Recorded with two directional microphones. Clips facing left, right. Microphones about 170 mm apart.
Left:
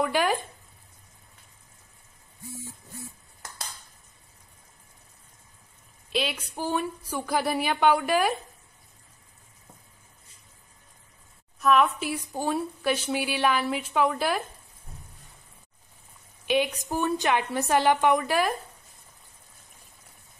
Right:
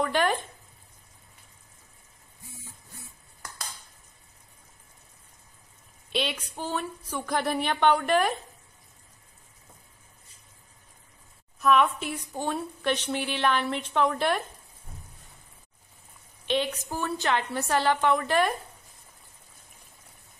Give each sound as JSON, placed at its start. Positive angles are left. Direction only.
{"t": 0.0, "sound": "a sound", "side_deg": 10}
{"t": 6.1, "sound": "a woman's voice", "side_deg": 5}
{"t": 11.6, "sound": "a woman's voice", "side_deg": 0}
{"t": 16.4, "sound": "a woman's voice", "side_deg": 10}